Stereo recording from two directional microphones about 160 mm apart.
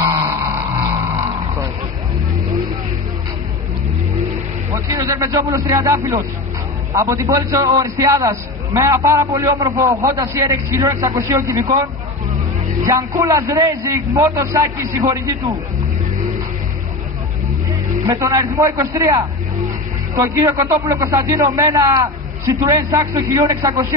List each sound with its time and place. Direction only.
4.7 s a man's voice: 20° right (ahead or behind)
12.8 s a man's voice: 20° right (ahead or behind)
18.2 s a man's voice: 20° right (ahead or behind)